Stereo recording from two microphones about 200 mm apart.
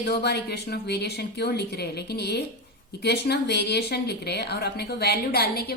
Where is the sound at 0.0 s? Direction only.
55° left (ahead or behind).